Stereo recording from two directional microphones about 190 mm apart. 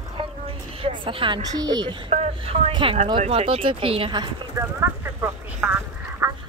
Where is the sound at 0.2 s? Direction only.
25° right (ahead or behind).